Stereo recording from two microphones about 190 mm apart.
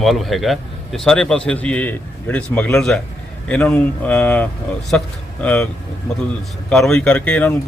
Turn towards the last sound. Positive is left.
turn(degrees=5)  # may be behind; listen again after turning